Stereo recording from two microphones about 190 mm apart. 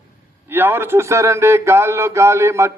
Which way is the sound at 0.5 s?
10° right (ahead or behind).